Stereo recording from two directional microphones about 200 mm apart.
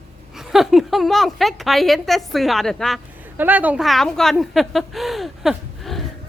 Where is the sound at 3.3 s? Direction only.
10° right (ahead or behind).